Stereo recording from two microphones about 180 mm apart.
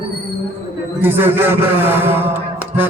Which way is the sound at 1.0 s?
10° right (ahead or behind).